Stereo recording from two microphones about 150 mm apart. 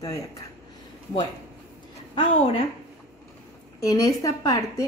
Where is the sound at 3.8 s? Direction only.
20° left (ahead or behind).